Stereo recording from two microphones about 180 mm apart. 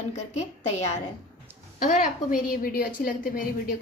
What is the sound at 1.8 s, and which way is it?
Speech, 45° left (ahead or behind).